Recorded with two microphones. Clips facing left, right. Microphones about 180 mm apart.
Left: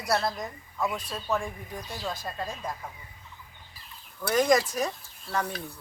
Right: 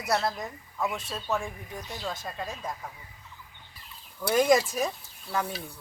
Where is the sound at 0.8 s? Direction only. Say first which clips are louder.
Left 1 dB; 25° right (ahead or behind).